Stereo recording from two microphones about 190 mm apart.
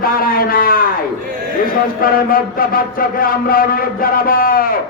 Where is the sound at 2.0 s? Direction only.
50° left (ahead or behind).